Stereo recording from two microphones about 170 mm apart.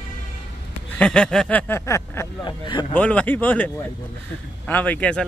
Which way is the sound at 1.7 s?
15° left (ahead or behind).